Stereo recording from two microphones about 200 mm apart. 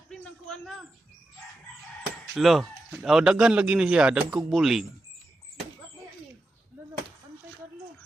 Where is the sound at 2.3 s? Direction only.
Centre (ahead or behind).